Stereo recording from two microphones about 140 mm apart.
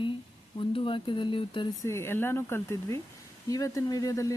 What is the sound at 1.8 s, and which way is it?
Speech, 20° left (ahead or behind).